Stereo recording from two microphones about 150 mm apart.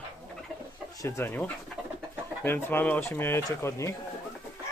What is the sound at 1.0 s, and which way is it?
Speech, 15° left (ahead or behind).